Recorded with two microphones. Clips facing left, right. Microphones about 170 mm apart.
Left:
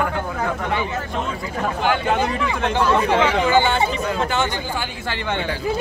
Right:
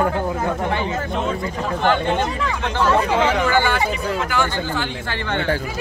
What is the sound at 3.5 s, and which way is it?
Speech, 20° left (ahead or behind).